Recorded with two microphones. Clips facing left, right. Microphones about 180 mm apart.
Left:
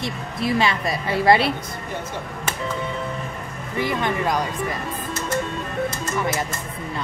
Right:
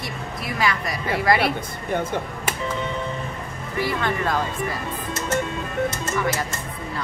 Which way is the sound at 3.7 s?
15° left (ahead or behind).